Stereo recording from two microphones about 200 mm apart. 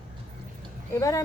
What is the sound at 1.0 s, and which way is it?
Speech, 15° left (ahead or behind).